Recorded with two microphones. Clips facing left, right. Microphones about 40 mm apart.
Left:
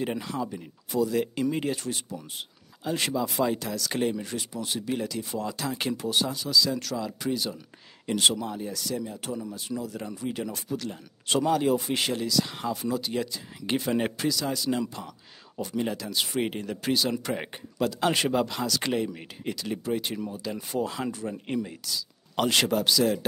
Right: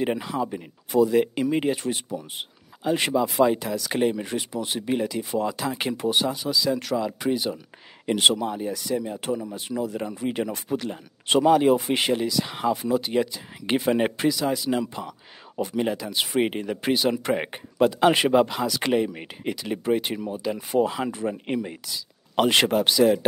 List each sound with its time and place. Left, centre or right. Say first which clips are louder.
0.4 s speech: right 5 dB; right
4.2 s speech: right 5 dB; right